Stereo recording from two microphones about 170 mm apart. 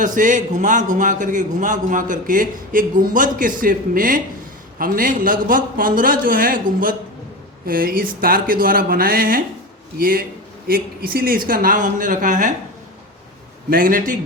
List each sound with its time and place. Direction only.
0.0 s a man's voice: 50° right (ahead or behind)
13.7 s a man's voice: 55° right (ahead or behind)